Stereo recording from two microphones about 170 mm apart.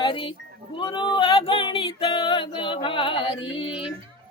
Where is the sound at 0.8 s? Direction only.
25° left (ahead or behind).